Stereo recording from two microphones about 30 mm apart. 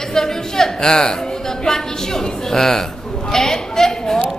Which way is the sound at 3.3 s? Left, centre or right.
Centre.